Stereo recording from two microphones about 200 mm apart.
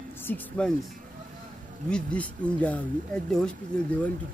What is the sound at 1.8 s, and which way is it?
Speech, 5° left (ahead or behind).